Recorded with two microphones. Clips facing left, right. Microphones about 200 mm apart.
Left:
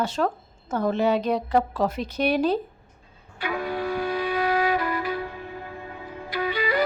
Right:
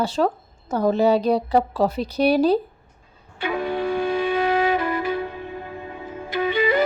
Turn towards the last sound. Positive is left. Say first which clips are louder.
# right 5 dB
turn(degrees=-25)  # may be behind; listen again after turning